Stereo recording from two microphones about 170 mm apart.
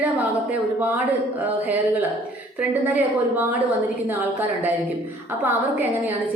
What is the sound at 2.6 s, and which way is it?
Speech, 10° right (ahead or behind).